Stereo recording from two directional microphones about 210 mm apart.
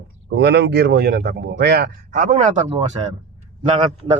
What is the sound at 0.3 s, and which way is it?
Speech, 55° right (ahead or behind).